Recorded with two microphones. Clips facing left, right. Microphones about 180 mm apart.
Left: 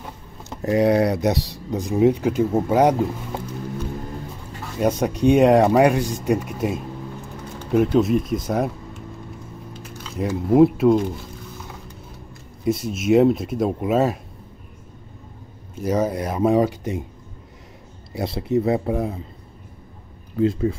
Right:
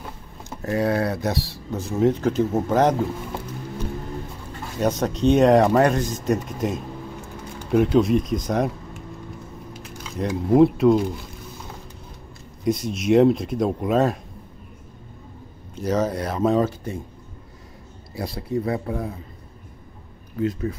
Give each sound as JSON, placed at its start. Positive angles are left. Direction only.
{"t": 0.6, "sound": "speech", "side_deg": 20}
{"t": 4.7, "sound": "speech", "side_deg": 10}
{"t": 10.1, "sound": "speech", "side_deg": 5}
{"t": 12.6, "sound": "speech", "side_deg": 5}
{"t": 15.7, "sound": "speech", "side_deg": 10}
{"t": 18.1, "sound": "speech", "side_deg": 25}
{"t": 20.3, "sound": "speech", "side_deg": 25}